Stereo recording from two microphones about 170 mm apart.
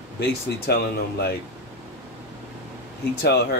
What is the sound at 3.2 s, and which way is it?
Speech, 70° left (ahead or behind).